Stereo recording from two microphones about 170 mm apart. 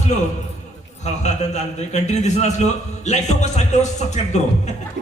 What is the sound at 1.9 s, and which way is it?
Speech, 40° left (ahead or behind).